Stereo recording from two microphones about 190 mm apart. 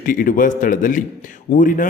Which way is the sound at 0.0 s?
45° left (ahead or behind).